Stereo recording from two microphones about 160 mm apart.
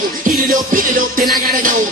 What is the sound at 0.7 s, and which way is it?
Music, 70° right (ahead or behind).